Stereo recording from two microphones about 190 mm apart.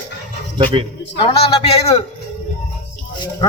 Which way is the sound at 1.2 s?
30° left (ahead or behind).